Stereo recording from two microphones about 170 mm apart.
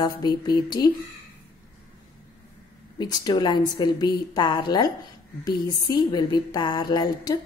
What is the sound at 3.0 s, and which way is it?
Speech, 25° left (ahead or behind).